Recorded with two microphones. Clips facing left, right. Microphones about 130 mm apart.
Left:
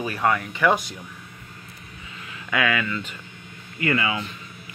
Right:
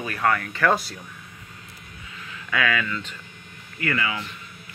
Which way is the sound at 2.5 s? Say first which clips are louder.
Left 1 dB; 10° left (ahead or behind).